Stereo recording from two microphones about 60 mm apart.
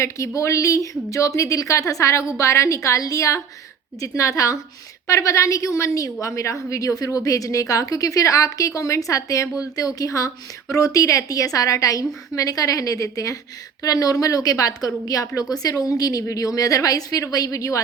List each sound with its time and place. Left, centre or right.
0.0 s a woman's voice: left
9.7 s a woman's voice: left
13.8 s a woman's voice: left
15.4 s a woman's voice: left
16.2 s a woman's voice: left